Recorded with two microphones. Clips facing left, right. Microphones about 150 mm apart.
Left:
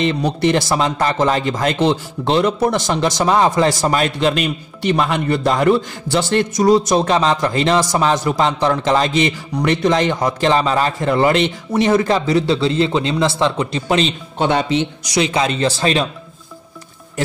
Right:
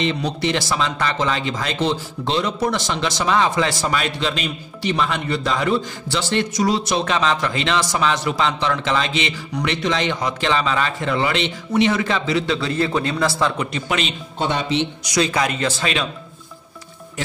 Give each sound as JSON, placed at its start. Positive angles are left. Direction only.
{"t": 0.0, "sound": "speech", "side_deg": 50}
{"t": 12.5, "sound": "a man's voice", "side_deg": 25}
{"t": 15.1, "sound": "a man's voice", "side_deg": 25}